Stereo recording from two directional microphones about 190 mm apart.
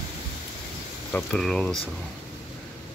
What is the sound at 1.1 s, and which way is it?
Speech, 5° left (ahead or behind).